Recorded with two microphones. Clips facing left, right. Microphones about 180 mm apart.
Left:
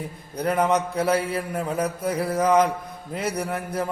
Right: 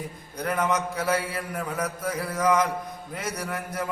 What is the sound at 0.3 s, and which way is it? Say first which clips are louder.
A man's voice: left 4 dB; 30° left (ahead or behind).